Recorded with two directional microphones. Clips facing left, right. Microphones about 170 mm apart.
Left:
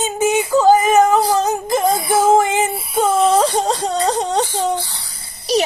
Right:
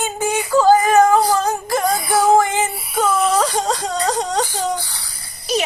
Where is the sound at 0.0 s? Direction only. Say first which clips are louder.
Left 4 dB; 20° left (ahead or behind).